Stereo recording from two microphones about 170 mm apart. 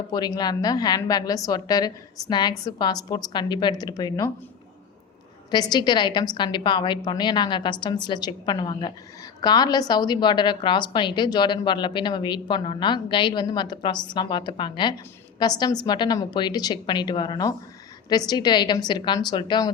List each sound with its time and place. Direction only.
0.1 s a woman's voice: 25° left (ahead or behind)
5.5 s a woman's voice: 25° left (ahead or behind)